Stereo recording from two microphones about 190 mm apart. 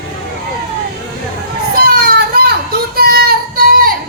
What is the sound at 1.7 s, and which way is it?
Children playing, 50° right (ahead or behind).